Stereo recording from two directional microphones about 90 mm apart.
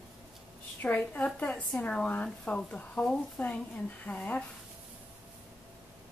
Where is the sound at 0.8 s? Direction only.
15° left (ahead or behind).